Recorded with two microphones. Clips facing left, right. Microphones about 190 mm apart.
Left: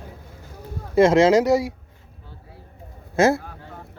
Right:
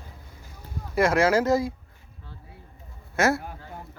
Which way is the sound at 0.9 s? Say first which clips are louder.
Left 6 dB; 25° left (ahead or behind).